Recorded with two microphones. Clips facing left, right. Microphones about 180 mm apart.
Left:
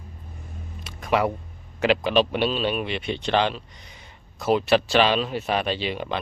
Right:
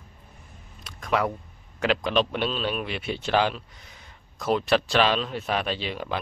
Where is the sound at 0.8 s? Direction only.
5° left (ahead or behind).